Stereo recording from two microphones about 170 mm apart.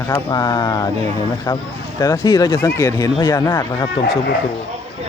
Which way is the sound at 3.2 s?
20° left (ahead or behind).